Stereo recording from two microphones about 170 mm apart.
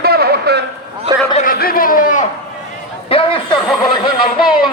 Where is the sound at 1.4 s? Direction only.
60° left (ahead or behind).